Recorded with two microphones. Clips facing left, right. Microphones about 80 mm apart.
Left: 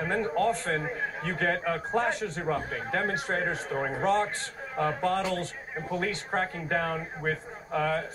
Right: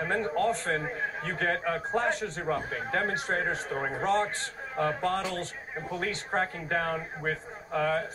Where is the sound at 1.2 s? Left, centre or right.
Right.